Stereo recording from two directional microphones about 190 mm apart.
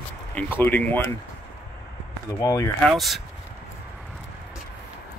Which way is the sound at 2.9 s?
Centre (ahead or behind).